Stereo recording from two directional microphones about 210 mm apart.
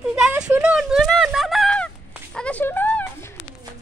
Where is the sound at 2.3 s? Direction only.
5° left (ahead or behind).